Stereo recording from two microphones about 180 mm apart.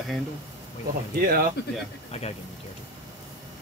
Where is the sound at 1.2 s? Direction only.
55° right (ahead or behind).